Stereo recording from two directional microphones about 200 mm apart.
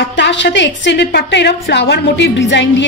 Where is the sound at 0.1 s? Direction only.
60° left (ahead or behind).